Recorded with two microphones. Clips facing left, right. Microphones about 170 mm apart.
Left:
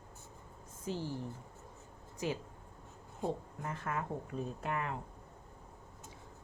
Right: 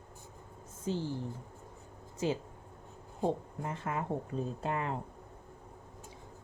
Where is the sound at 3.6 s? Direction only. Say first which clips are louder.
Right 3 dB; 20° right (ahead or behind).